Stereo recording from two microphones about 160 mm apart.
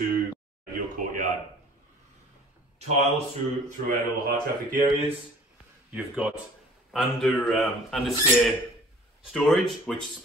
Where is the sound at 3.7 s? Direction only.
60° right (ahead or behind).